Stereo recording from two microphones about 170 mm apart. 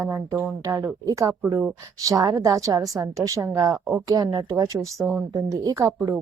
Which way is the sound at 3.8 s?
Centre (ahead or behind).